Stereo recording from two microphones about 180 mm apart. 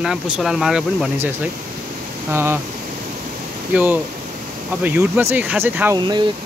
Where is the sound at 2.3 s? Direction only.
15° right (ahead or behind).